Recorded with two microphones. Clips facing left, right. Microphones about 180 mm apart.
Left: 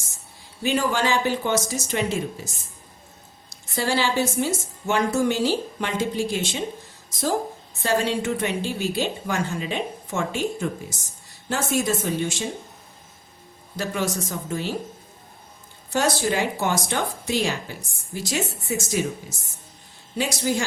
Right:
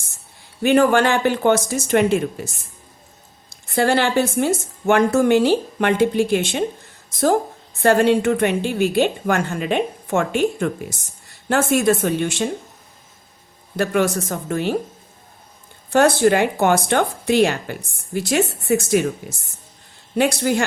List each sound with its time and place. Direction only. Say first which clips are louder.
0.6 s speech: right 8 dB; 60° right (ahead or behind)
13.7 s speech: right 7 dB; 60° right (ahead or behind)
15.9 s speech: right 8 dB; 60° right (ahead or behind)
20.1 s speech: right 6 dB; 60° right (ahead or behind)